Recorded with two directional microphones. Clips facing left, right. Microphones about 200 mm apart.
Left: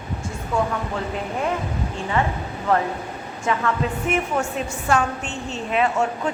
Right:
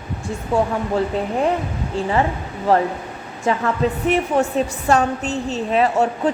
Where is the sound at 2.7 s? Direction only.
35° right (ahead or behind).